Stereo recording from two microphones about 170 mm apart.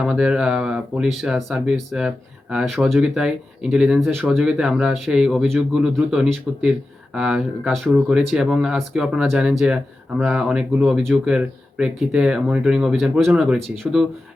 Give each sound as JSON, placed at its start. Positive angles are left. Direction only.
{"t": 0.0, "sound": "speech", "side_deg": -5}